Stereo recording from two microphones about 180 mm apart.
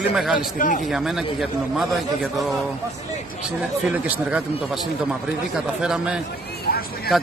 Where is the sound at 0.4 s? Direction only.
45° left (ahead or behind).